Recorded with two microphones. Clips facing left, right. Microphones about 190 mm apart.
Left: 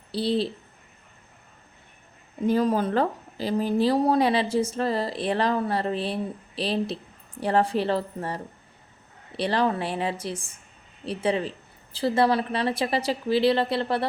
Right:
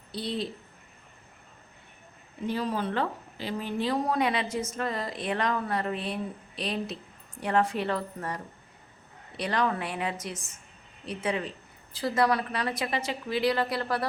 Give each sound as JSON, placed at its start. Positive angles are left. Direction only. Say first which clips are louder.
{"t": 0.1, "sound": "speech", "louder": "left 8 dB", "side_deg": 30}
{"t": 2.5, "sound": "speech", "louder": "left 7 dB", "side_deg": 45}
{"t": 9.4, "sound": "speech", "louder": "left 4 dB", "side_deg": 30}